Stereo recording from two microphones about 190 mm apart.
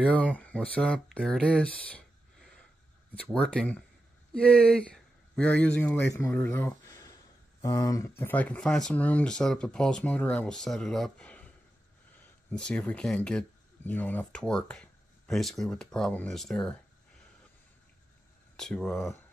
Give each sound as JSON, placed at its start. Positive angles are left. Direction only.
{"t": 0.0, "sound": "speech", "side_deg": 5}
{"t": 8.2, "sound": "speech", "side_deg": 10}
{"t": 12.4, "sound": "speech", "side_deg": 5}
{"t": 18.6, "sound": "speech", "side_deg": 5}